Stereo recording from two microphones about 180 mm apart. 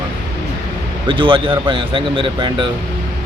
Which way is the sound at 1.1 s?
25° right (ahead or behind).